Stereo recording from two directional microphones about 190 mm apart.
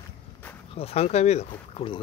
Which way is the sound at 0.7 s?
30° left (ahead or behind).